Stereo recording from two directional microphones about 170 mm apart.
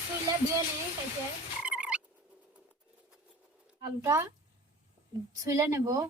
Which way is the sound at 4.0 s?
20° right (ahead or behind).